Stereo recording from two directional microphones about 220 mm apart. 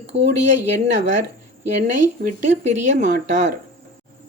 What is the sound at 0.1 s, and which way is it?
Speech, 25° right (ahead or behind).